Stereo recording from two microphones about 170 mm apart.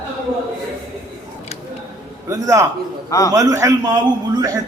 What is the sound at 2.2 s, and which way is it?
A man's voice, 20° right (ahead or behind).